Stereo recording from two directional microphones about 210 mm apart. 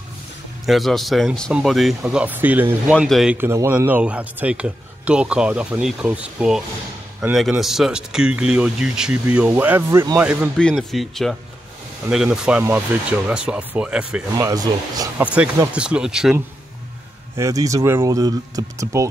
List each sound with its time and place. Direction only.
0.7 s speech: centre (ahead or behind)
14.5 s speech: 15° right (ahead or behind)
15.2 s speech: 5° right (ahead or behind)
17.4 s speech: 15° right (ahead or behind)